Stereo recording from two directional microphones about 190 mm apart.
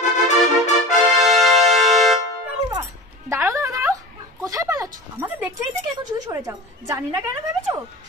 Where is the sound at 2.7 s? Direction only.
15° right (ahead or behind).